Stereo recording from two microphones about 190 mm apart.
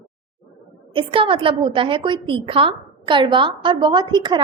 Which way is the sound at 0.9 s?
25° right (ahead or behind).